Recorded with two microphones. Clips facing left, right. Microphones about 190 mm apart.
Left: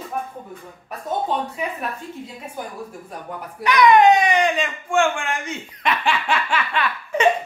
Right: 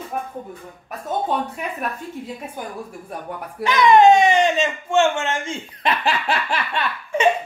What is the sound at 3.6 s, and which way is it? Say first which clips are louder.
Speech: right 1 dB; 25° right (ahead or behind).